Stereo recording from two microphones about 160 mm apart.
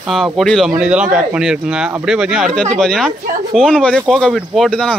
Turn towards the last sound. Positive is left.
turn(degrees=5)  # may be behind; listen again after turning